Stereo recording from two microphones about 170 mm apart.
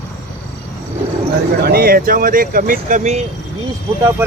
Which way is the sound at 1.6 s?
65° right (ahead or behind).